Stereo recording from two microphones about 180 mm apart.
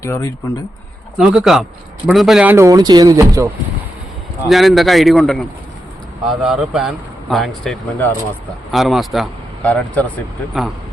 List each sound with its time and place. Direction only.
0.0 s speech: 15° left (ahead or behind)
1.2 s a man's voice: 5° right (ahead or behind)
4.4 s a man's voice: centre (ahead or behind)
7.9 s speech: 15° left (ahead or behind)
8.7 s a man's voice: centre (ahead or behind)